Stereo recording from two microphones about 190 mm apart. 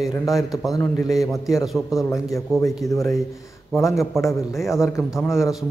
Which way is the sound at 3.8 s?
15° left (ahead or behind).